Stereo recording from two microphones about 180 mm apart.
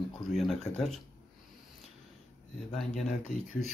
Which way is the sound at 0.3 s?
Centre (ahead or behind).